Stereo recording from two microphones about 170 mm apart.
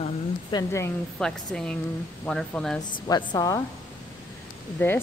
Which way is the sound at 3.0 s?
25° left (ahead or behind).